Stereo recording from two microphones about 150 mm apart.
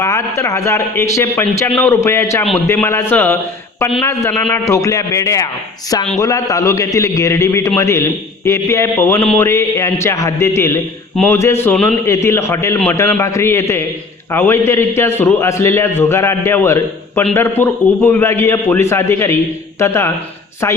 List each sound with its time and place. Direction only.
0.0 s a man's voice: 20° left (ahead or behind)